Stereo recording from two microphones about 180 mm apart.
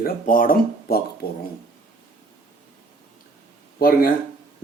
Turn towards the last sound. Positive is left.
turn(degrees=55)  # may be behind; listen again after turning